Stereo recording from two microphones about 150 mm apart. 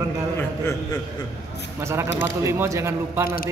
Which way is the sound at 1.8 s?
20° right (ahead or behind).